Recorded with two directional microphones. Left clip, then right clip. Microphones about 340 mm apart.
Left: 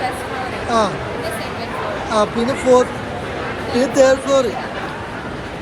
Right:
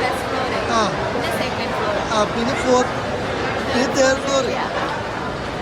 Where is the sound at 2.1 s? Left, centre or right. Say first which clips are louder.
Left 2 dB; centre.